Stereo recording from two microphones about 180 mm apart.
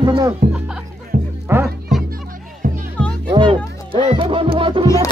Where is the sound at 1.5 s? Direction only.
15° right (ahead or behind).